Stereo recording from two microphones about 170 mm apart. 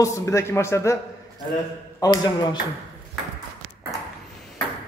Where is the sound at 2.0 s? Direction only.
25° left (ahead or behind).